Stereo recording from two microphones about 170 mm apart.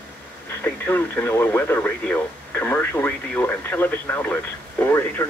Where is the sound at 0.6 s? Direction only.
10° left (ahead or behind).